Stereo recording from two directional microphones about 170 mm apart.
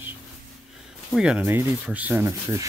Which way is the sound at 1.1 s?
5° right (ahead or behind).